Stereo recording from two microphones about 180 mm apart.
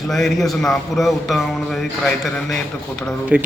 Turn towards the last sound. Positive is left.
turn(degrees=-5)  # may be behind; listen again after turning